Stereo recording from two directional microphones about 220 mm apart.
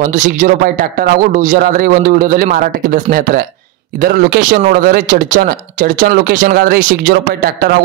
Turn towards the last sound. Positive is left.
turn(degrees=-45)  # may be behind; listen again after turning